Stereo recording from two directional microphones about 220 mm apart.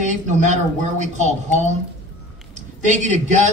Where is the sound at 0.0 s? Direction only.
35° right (ahead or behind).